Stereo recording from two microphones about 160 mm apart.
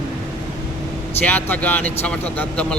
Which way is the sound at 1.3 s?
10° left (ahead or behind).